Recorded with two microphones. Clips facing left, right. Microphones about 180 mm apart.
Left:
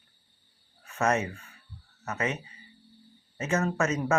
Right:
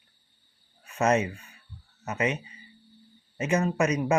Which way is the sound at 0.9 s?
20° right (ahead or behind).